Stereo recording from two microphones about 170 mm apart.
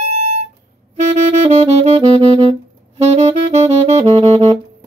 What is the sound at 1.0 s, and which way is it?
Saxophone, 40° right (ahead or behind).